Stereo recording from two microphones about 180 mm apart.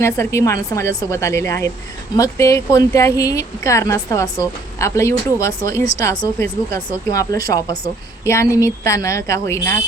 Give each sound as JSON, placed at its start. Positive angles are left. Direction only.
{"t": 0.0, "sound": "speech", "side_deg": 15}